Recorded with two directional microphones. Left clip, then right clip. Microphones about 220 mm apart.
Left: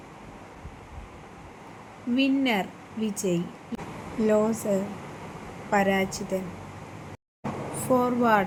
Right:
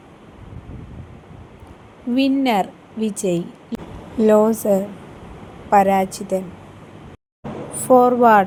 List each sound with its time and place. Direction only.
2.1 s a woman's voice: 30° right (ahead or behind)
7.9 s a woman's voice: 25° right (ahead or behind)